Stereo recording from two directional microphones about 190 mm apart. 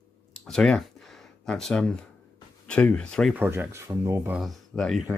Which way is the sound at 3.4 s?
10° right (ahead or behind).